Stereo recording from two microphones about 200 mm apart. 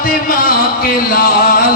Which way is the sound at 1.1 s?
45° left (ahead or behind).